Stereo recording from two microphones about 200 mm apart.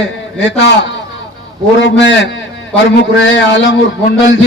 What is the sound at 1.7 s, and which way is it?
A man's voice, 65° left (ahead or behind).